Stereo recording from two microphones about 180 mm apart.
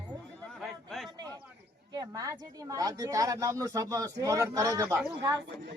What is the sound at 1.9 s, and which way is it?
Speech, 20° right (ahead or behind).